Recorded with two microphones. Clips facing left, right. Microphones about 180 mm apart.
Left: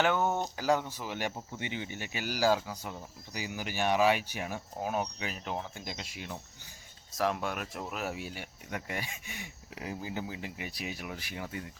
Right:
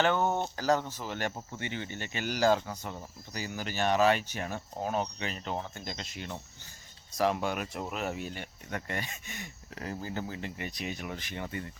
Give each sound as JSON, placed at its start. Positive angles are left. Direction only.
{"t": 0.0, "sound": "speech", "side_deg": 10}